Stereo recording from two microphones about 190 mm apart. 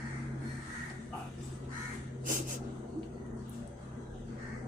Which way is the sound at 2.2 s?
45° right (ahead or behind).